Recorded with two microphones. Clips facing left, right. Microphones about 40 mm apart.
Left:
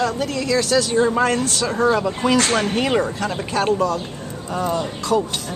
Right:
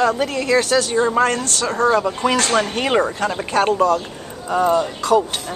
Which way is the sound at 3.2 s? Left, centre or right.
Centre.